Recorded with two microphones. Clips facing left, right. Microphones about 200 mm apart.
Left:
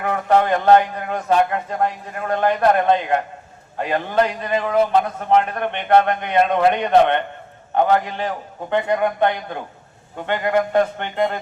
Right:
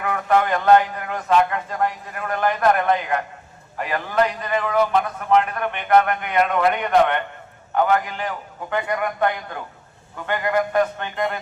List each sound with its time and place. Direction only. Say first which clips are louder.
0.0 s a man's voice: left 2 dB; 30° left (ahead or behind)